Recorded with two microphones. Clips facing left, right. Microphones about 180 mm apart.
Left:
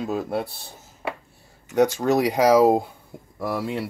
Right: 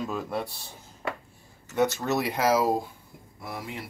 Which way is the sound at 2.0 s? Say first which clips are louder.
Left 7 dB; 90° left.